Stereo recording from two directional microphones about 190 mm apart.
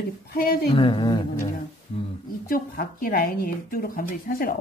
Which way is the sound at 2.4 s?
50° left (ahead or behind).